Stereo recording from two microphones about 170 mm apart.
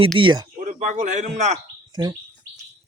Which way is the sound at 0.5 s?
45° right (ahead or behind).